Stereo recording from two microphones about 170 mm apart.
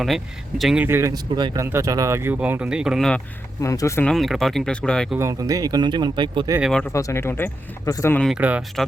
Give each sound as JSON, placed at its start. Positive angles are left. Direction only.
{"t": 0.6, "sound": "speech", "side_deg": -5}
{"t": 0.9, "sound": "speech", "side_deg": -15}
{"t": 3.6, "sound": "speech", "side_deg": 20}
{"t": 4.0, "sound": "speech", "side_deg": 0}
{"t": 5.1, "sound": "speech", "side_deg": -20}
{"t": 6.6, "sound": "speech", "side_deg": 0}
{"t": 6.9, "sound": "speech", "side_deg": 15}
{"t": 8.4, "sound": "speech", "side_deg": -10}